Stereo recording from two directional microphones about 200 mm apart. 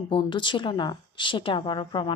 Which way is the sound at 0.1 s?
25° left (ahead or behind).